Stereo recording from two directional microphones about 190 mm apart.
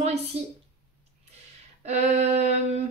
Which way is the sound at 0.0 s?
35° right (ahead or behind).